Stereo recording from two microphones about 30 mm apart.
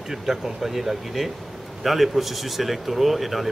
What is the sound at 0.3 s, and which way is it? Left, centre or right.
A man's voice, centre.